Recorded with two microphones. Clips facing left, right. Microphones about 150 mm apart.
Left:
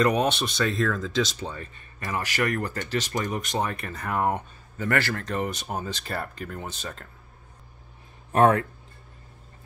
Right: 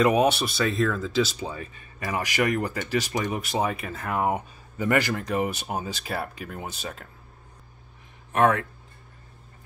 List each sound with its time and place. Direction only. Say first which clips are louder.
0.0 s speech: right 2 dB; 5° right (ahead or behind)
8.3 s speech: left 2 dB; 30° left (ahead or behind)